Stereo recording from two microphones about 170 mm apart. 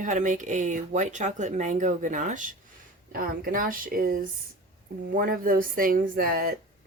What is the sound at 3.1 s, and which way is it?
Speech, 60° right (ahead or behind).